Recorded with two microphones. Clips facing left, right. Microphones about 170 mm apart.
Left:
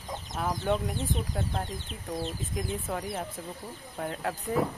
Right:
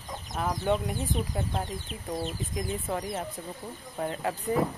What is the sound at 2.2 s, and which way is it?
Speech, centre (ahead or behind).